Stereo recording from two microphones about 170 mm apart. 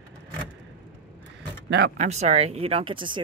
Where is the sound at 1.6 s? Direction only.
75° right (ahead or behind).